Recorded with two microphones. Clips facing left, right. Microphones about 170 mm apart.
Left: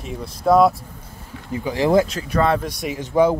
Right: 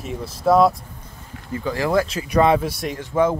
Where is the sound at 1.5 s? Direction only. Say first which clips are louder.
Left 3 dB; 15° left (ahead or behind).